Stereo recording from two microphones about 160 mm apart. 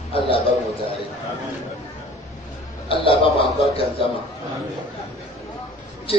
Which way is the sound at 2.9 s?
35° left (ahead or behind).